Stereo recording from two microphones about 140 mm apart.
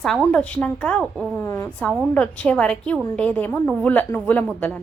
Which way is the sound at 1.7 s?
10° left (ahead or behind).